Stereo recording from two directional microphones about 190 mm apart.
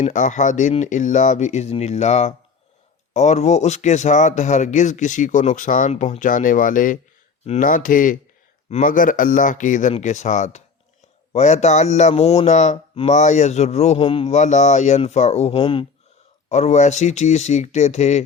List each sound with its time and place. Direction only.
0.0 s speech: 40° left (ahead or behind)